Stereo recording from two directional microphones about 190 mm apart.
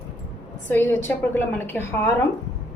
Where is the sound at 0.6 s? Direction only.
10° left (ahead or behind).